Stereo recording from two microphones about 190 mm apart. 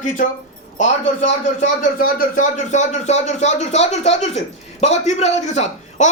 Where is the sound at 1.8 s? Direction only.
50° left (ahead or behind).